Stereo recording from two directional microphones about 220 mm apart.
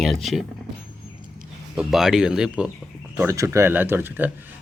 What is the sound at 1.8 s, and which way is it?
Speech, centre (ahead or behind).